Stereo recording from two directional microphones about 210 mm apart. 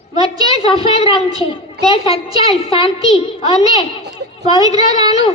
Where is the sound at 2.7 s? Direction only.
25° left (ahead or behind).